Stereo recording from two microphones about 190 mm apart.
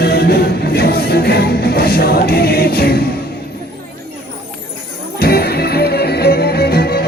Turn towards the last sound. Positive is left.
turn(degrees=55)  # may be behind; listen again after turning